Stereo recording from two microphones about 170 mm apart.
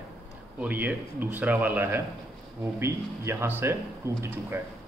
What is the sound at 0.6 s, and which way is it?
Speech, 10° right (ahead or behind).